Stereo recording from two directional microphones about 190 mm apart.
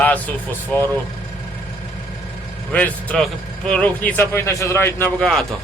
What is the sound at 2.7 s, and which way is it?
A man's voice, 5° left (ahead or behind).